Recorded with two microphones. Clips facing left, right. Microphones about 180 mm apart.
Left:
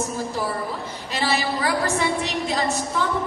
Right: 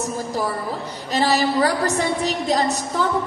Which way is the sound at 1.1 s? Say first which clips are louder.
Right 5 dB; 40° right (ahead or behind).